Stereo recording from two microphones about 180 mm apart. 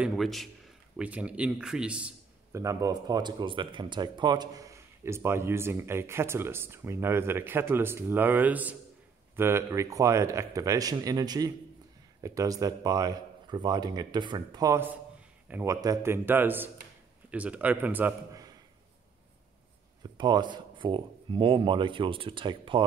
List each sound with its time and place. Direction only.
0.0 s a man's voice: centre (ahead or behind)
2.6 s speech: 20° right (ahead or behind)
20.0 s speech: 25° right (ahead or behind)